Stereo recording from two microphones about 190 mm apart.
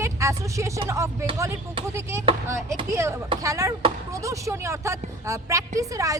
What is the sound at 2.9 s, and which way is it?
Speech, 15° right (ahead or behind).